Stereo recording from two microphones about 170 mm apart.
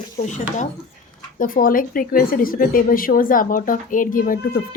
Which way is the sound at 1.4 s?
55° left (ahead or behind).